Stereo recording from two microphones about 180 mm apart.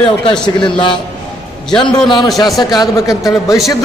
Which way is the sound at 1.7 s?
25° left (ahead or behind).